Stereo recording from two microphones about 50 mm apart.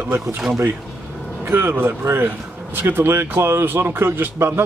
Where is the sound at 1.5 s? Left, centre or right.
Right.